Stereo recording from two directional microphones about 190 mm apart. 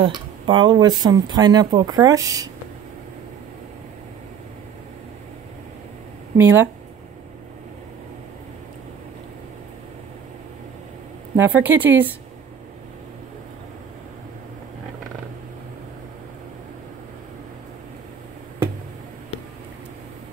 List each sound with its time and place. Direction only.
0.0 s speech: 25° right (ahead or behind)
6.3 s speech: 10° right (ahead or behind)
11.3 s speech: 10° right (ahead or behind)